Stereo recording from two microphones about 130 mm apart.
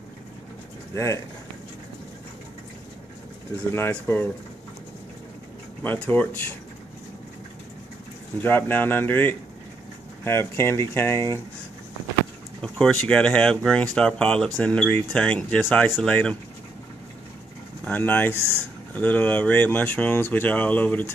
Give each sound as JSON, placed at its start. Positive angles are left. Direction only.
{"t": 0.9, "sound": "speech", "side_deg": 20}
{"t": 3.7, "sound": "speech", "side_deg": 15}
{"t": 5.8, "sound": "speech", "side_deg": 10}
{"t": 8.4, "sound": "speech", "side_deg": 15}
{"t": 12.6, "sound": "speech", "side_deg": 5}
{"t": 17.8, "sound": "speech", "side_deg": 15}
{"t": 18.3, "sound": "speech", "side_deg": -20}
{"t": 18.9, "sound": "speech", "side_deg": 10}